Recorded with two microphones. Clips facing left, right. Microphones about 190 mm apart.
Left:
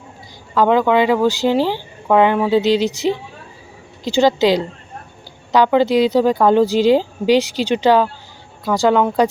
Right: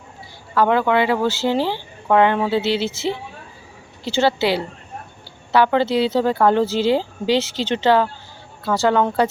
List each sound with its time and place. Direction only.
0.5 s speech: 15° left (ahead or behind)